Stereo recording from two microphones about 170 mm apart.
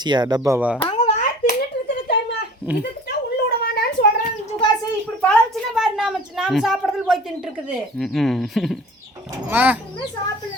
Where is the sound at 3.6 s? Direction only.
65° left (ahead or behind).